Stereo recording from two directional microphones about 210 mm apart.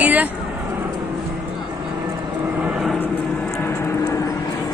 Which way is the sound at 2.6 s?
5° right (ahead or behind).